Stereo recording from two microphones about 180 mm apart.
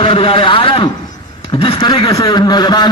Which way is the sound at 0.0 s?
30° left (ahead or behind).